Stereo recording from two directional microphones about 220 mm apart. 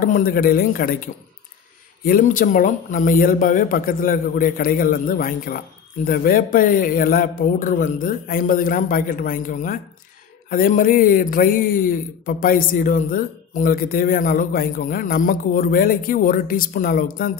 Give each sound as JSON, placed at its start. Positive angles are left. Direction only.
{"t": 0.0, "sound": "a man's voice", "side_deg": 40}